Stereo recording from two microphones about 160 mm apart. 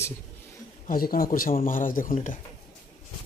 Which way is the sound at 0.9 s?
65° left (ahead or behind).